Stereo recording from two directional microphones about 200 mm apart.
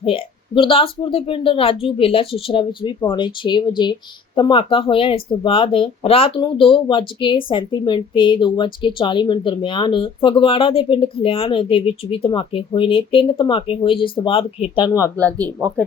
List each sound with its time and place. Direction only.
0.0 s a woman's voice: 25° left (ahead or behind)